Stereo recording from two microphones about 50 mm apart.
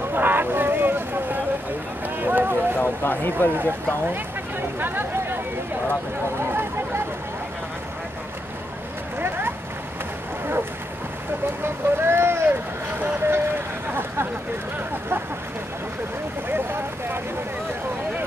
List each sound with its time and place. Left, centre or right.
0.1 s boat: right
2.0 s a sound: right
2.8 s speech: left
3.5 s speech: right
10.4 s boat: right
11.6 s vehicle: right